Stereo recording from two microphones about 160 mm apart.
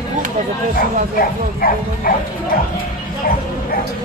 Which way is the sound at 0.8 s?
65° left (ahead or behind).